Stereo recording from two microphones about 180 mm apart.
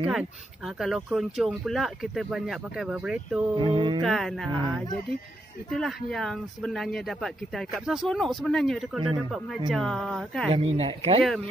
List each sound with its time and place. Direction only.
0.0 s speech: 5° right (ahead or behind)
3.5 s music: 30° right (ahead or behind)
4.0 s speech: centre (ahead or behind)
5.7 s speech: centre (ahead or behind)
10.5 s speech: 35° right (ahead or behind)